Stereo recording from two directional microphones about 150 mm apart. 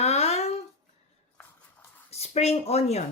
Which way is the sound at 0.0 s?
45° left (ahead or behind).